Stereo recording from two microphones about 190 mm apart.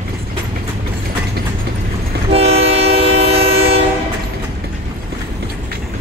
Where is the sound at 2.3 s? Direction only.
35° right (ahead or behind).